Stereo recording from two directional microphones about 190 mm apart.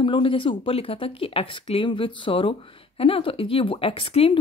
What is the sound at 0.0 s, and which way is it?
Speech, 25° left (ahead or behind).